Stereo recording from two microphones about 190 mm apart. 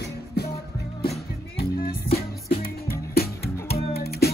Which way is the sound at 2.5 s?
50° left (ahead or behind).